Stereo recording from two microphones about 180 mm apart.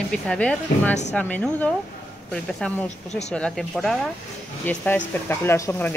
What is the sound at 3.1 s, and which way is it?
Speech, 40° left (ahead or behind).